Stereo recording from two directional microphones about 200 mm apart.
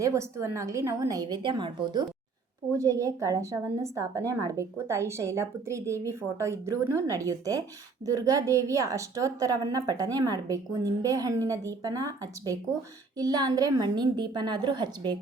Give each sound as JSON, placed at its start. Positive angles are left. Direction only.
{"t": 0.0, "sound": "a woman's voice", "side_deg": -15}